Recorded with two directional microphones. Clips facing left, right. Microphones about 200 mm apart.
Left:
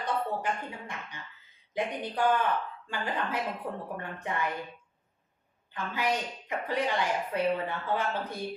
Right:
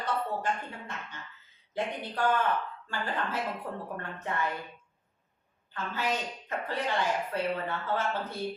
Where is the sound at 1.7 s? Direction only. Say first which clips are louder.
Left 2 dB; 15° left (ahead or behind).